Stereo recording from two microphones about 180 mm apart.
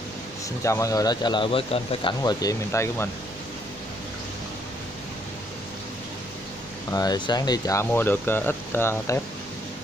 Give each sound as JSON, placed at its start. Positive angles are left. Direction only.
{"t": 0.7, "sound": "speech", "side_deg": 15}
{"t": 6.9, "sound": "speech", "side_deg": 20}